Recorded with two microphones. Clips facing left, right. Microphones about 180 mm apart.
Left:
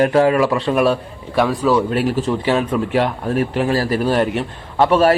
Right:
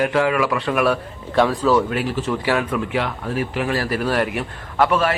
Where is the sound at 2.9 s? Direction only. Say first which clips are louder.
Left 5 dB; 40° left (ahead or behind).